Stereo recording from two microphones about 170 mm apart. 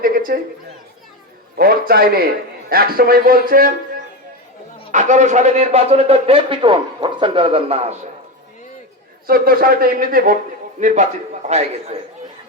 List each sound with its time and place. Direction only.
0.0 s a man's voice: 55° right (ahead or behind)
1.5 s a man's voice: 65° right (ahead or behind)
4.9 s a man's voice: 45° right (ahead or behind)
9.2 s a man's voice: 60° right (ahead or behind)
10.8 s a man's voice: 45° right (ahead or behind)